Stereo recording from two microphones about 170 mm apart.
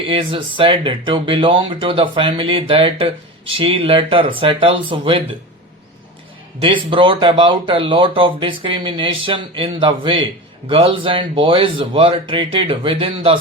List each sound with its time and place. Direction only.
0.0 s speech: 30° right (ahead or behind)
6.6 s speech: 30° right (ahead or behind)